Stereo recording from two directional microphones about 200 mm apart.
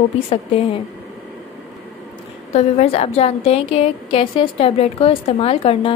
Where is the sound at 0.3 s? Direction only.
30° left (ahead or behind).